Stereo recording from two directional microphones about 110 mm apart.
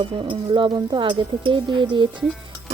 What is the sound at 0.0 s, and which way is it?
A woman's voice, 50° right (ahead or behind).